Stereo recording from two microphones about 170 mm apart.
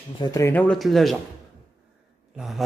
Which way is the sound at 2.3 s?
Centre (ahead or behind).